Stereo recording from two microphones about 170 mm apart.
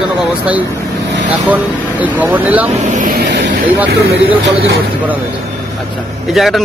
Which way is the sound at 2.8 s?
50° right (ahead or behind).